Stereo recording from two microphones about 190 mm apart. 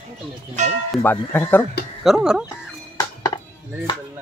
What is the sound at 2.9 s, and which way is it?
Music, 20° left (ahead or behind).